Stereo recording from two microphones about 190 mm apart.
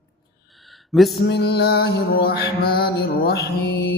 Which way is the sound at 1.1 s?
60° left (ahead or behind).